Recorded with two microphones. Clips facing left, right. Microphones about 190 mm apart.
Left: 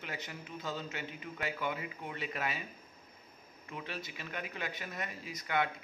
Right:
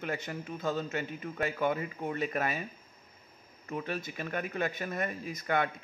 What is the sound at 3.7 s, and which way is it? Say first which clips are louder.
A man's voice: right 7 dB; 45° right (ahead or behind).